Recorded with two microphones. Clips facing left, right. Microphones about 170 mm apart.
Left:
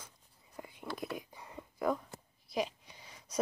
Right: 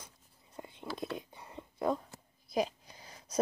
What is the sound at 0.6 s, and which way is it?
Whispering, 25° right (ahead or behind).